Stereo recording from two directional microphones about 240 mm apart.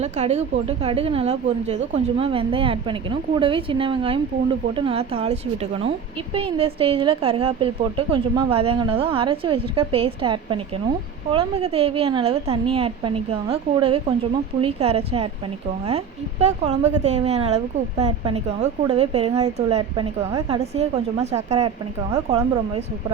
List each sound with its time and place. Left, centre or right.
0.0 s a woman's voice: right
16.4 s a woman's voice: right